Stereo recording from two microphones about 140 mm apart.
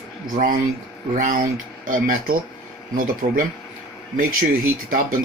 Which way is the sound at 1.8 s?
85° right.